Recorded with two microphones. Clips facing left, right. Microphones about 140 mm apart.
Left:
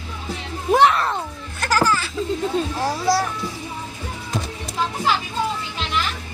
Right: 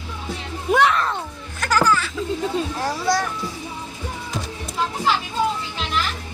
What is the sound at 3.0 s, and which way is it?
Speech, 5° left (ahead or behind).